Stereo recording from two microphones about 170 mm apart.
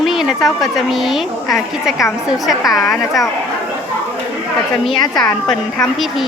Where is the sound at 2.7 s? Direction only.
20° left (ahead or behind).